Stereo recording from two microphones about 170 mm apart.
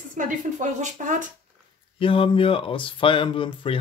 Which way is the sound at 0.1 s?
50° right (ahead or behind).